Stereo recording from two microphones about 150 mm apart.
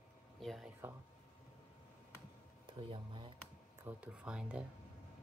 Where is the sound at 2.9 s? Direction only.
35° right (ahead or behind).